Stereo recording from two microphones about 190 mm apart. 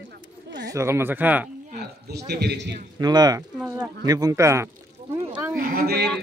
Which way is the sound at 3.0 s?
20° right (ahead or behind).